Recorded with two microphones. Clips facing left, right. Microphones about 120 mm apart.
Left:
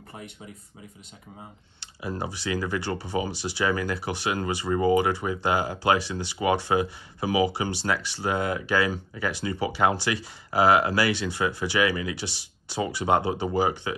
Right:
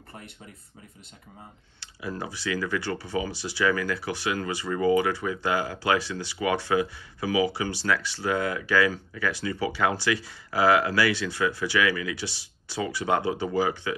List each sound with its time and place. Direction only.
1.8 s speech: 20° left (ahead or behind)